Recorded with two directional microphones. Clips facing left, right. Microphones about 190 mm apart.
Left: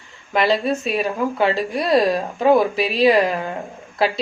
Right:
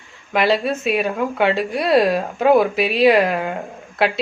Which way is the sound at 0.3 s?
Centre (ahead or behind).